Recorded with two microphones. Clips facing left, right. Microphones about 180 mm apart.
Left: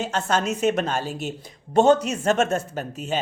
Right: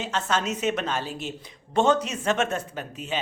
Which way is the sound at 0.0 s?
45° left (ahead or behind).